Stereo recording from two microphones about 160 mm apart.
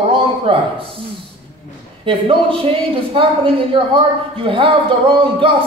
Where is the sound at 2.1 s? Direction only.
35° right (ahead or behind).